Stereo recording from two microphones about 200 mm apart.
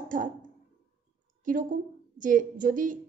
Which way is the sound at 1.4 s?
40° right (ahead or behind).